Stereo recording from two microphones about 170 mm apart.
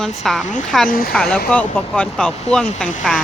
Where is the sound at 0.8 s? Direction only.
55° left (ahead or behind).